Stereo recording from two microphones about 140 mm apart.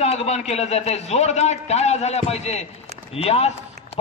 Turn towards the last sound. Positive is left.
turn(degrees=45)  # may be behind; listen again after turning